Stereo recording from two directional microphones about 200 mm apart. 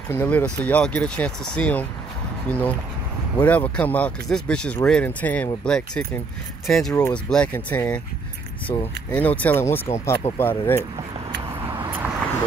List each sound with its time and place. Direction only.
0.1 s speech: 10° left (ahead or behind)
6.9 s speech: 15° left (ahead or behind)
7.2 s speech: 5° left (ahead or behind)